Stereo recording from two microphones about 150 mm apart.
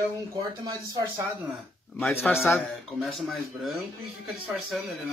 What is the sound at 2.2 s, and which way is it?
Speech, centre (ahead or behind).